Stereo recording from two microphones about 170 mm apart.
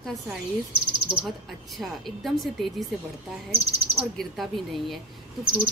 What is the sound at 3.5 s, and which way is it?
Speech, 35° right (ahead or behind).